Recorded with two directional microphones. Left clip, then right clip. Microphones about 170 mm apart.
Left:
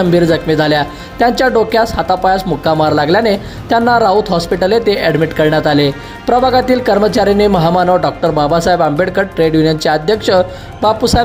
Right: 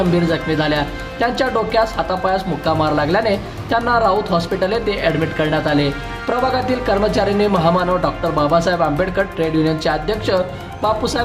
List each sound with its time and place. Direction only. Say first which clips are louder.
0.1 s speech: left 7 dB; 45° left (ahead or behind)